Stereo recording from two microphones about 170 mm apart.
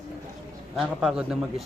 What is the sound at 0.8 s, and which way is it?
Speech, 5° right (ahead or behind).